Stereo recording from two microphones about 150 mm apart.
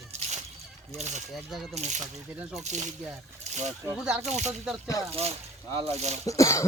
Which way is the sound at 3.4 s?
50° right (ahead or behind).